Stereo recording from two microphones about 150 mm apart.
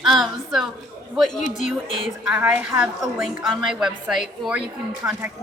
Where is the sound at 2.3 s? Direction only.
10° right (ahead or behind).